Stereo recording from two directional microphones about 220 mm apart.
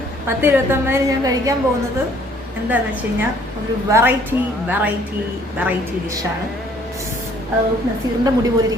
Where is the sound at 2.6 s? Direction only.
5° right (ahead or behind).